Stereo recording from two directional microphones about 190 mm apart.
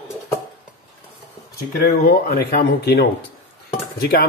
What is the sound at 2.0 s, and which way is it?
Speech, 55° left (ahead or behind).